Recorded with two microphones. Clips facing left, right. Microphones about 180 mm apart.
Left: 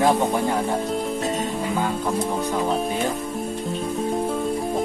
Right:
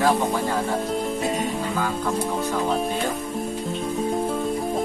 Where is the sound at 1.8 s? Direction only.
15° left (ahead or behind).